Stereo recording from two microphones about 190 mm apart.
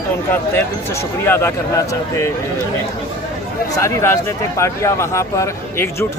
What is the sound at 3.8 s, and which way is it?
Speech, 15° left (ahead or behind).